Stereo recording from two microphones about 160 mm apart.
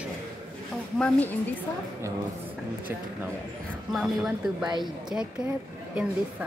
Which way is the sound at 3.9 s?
Centre (ahead or behind).